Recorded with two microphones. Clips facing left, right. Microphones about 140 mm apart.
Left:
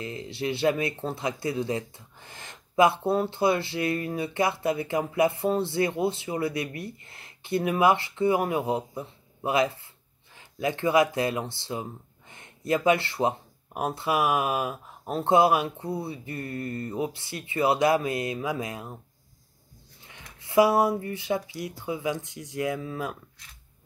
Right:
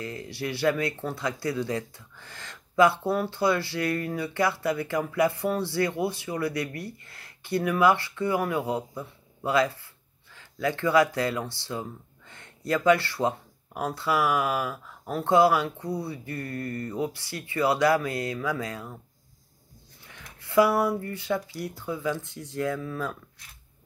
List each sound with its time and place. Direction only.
0.0 s speech: 20° left (ahead or behind)
20.1 s speech: 20° left (ahead or behind)